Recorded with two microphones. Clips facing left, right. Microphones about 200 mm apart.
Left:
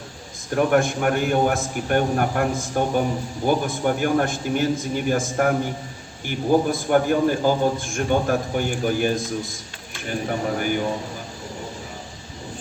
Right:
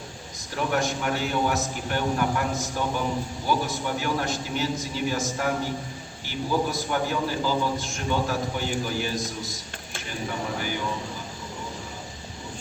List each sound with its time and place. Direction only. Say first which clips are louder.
0.5 s a man's voice: left 7 dB; 55° left (ahead or behind)